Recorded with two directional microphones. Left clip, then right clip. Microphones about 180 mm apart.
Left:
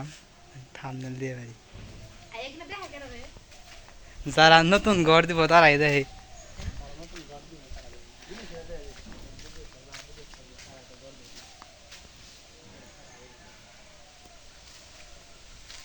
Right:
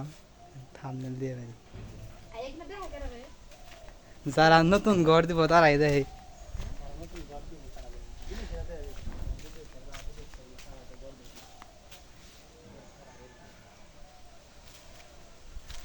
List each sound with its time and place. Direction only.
0.7 s speech: centre (ahead or behind)
4.3 s speech: 5° right (ahead or behind)
8.7 s a sound: 40° left (ahead or behind)